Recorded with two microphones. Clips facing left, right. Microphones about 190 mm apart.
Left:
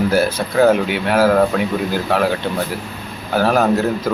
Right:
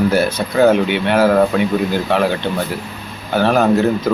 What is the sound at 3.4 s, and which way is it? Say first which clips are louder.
Speech: right 1 dB; centre (ahead or behind).